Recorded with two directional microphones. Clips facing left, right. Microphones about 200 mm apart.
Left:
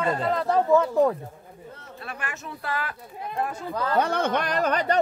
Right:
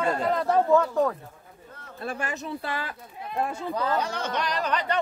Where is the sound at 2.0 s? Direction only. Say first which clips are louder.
Right 5 dB; 30° right (ahead or behind).